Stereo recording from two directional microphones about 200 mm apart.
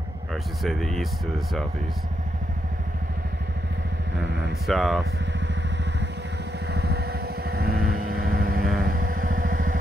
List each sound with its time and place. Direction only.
0.3 s speech: centre (ahead or behind)
4.6 s speech: centre (ahead or behind)
5.2 s vehicle: 65° right (ahead or behind); by 9.8 s 45° right (ahead or behind)